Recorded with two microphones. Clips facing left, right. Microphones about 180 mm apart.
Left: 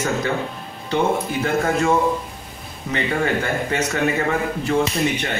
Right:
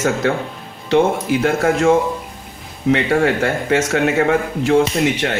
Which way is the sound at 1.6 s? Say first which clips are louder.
Right 4 dB; 85° right.